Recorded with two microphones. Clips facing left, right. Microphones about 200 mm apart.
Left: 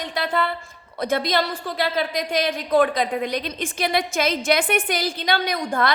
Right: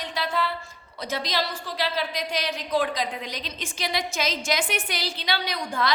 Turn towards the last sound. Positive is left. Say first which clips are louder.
# left 5 dB
turn(degrees=55)  # may be behind; listen again after turning